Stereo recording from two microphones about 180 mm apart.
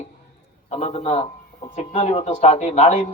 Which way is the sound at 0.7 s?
35° left (ahead or behind).